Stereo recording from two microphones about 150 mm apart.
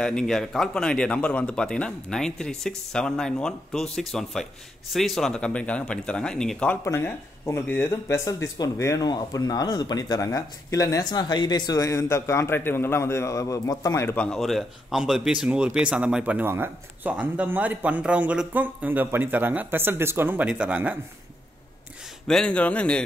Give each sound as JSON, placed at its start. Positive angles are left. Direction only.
{"t": 0.0, "sound": "a man's voice", "side_deg": 5}
{"t": 6.8, "sound": "speech", "side_deg": 15}
{"t": 14.1, "sound": "a man's voice", "side_deg": 5}
{"t": 22.3, "sound": "speech", "side_deg": 5}